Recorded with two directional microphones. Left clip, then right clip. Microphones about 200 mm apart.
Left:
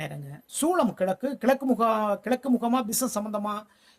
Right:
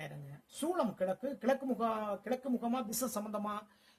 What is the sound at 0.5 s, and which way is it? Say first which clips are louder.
Speech: left 11 dB; 40° left (ahead or behind).